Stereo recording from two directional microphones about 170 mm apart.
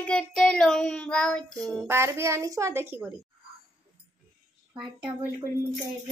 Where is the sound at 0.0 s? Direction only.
5° left (ahead or behind).